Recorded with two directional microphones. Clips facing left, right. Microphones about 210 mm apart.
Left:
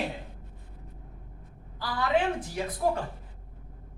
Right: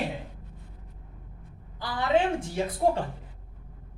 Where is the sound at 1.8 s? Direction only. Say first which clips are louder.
Right 2 dB; 25° right (ahead or behind).